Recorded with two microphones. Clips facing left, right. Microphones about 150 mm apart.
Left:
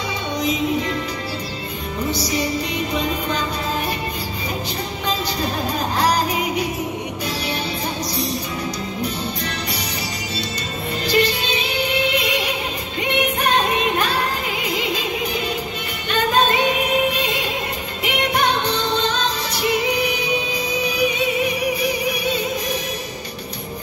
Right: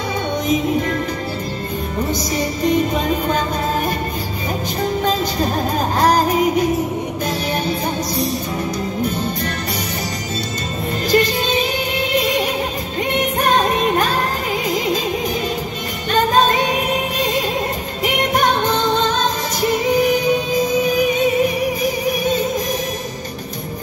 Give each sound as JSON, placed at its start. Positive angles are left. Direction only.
{"t": 0.5, "sound": "music", "side_deg": -50}
{"t": 2.1, "sound": "music", "side_deg": -45}
{"t": 5.9, "sound": "music", "side_deg": -45}
{"t": 11.1, "sound": "music", "side_deg": -45}
{"t": 14.7, "sound": "opera", "side_deg": -45}
{"t": 16.1, "sound": "music", "side_deg": -40}